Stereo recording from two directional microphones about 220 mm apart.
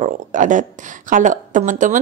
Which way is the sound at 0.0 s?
35° right (ahead or behind).